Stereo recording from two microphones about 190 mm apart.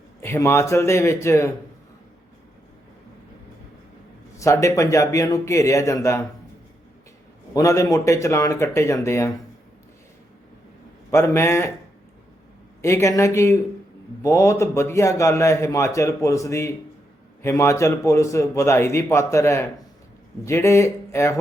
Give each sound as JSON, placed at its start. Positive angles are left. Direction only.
{"t": 0.2, "sound": "a man's voice", "side_deg": 15}
{"t": 4.4, "sound": "a man's voice", "side_deg": 15}
{"t": 7.5, "sound": "a man's voice", "side_deg": 15}
{"t": 11.1, "sound": "a man's voice", "side_deg": 15}
{"t": 12.8, "sound": "a man's voice", "side_deg": 15}